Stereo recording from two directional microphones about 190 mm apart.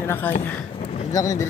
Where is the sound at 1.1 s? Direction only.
20° left (ahead or behind).